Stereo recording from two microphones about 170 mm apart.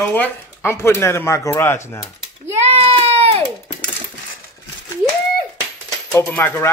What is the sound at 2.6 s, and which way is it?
Child singing, 35° right (ahead or behind).